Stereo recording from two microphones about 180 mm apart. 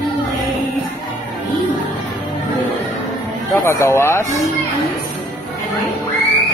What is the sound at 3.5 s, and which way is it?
Speech, 15° left (ahead or behind).